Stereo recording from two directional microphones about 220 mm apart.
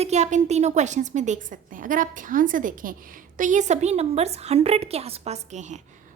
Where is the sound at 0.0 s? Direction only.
30° right (ahead or behind).